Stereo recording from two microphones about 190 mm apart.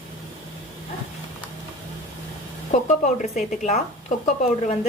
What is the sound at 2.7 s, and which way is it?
Speech, 35° left (ahead or behind).